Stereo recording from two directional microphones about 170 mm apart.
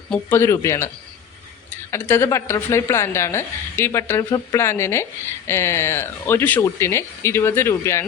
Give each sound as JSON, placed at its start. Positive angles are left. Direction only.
{"t": 0.1, "sound": "a woman's voice", "side_deg": 15}
{"t": 1.9, "sound": "a woman's voice", "side_deg": 15}